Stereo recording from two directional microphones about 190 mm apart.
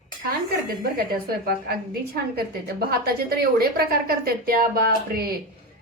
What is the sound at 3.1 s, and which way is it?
A woman's voice, 55° right (ahead or behind).